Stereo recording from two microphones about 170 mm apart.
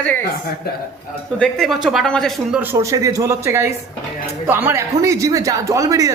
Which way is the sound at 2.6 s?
15° right (ahead or behind).